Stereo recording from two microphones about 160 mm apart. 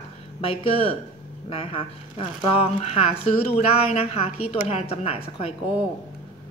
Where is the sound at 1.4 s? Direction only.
35° left (ahead or behind).